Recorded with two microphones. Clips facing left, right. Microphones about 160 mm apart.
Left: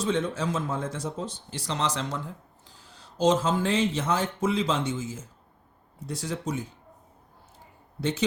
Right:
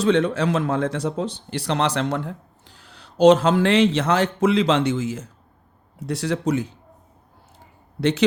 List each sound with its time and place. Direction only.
0.0 s speech: 70° right (ahead or behind)